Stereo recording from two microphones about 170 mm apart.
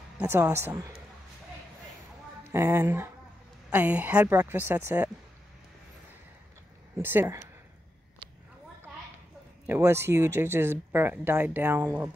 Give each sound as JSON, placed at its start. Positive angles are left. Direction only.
{"t": 0.2, "sound": "speech", "side_deg": -15}
{"t": 2.5, "sound": "speech", "side_deg": -15}
{"t": 7.0, "sound": "speech", "side_deg": -10}
{"t": 9.7, "sound": "speech", "side_deg": -15}